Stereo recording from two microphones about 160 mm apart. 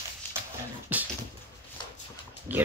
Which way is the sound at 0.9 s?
10° right (ahead or behind).